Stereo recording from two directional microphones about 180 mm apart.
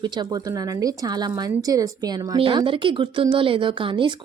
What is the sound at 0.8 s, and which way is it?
Speech, 20° right (ahead or behind).